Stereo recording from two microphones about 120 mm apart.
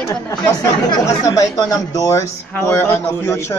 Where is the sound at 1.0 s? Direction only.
25° left (ahead or behind).